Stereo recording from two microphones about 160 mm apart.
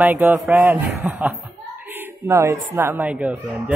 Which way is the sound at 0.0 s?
10° right (ahead or behind).